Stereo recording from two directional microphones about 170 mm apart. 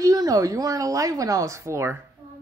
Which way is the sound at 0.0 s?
20° right (ahead or behind).